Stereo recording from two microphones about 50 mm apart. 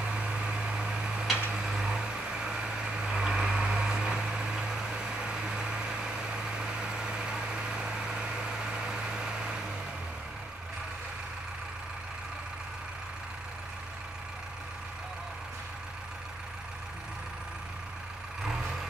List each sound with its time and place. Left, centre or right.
0.1 s vehicle: centre